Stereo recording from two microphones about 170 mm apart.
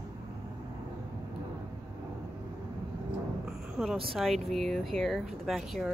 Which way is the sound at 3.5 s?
Centre (ahead or behind).